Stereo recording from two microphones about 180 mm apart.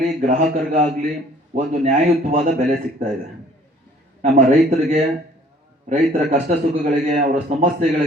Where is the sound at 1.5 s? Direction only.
45° right (ahead or behind).